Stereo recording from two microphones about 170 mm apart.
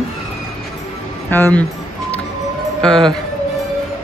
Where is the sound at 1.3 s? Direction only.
10° left (ahead or behind).